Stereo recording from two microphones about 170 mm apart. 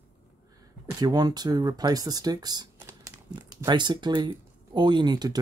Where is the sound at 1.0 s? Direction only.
25° right (ahead or behind).